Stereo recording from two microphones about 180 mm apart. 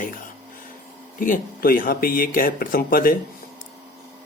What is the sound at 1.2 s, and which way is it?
Speech, 50° left (ahead or behind).